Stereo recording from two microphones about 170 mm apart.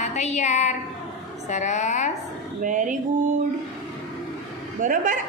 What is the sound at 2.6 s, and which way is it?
Speech, 50° right (ahead or behind).